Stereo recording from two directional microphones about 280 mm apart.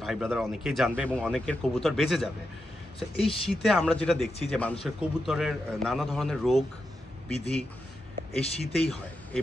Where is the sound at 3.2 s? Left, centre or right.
Centre.